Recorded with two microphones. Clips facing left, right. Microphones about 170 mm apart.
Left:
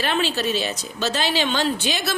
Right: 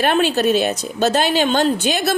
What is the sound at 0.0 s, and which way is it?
A woman's voice, 50° right (ahead or behind).